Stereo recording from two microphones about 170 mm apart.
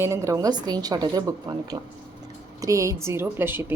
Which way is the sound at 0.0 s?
15° right (ahead or behind).